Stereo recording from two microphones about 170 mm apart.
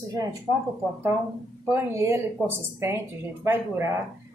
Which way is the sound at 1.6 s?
15° right (ahead or behind).